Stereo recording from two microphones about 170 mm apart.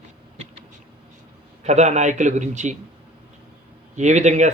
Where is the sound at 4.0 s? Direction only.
45° right (ahead or behind).